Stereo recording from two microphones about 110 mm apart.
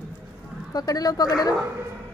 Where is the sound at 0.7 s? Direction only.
35° left (ahead or behind).